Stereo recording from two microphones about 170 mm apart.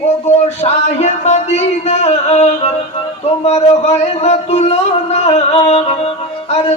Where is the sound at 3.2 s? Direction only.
40° left (ahead or behind).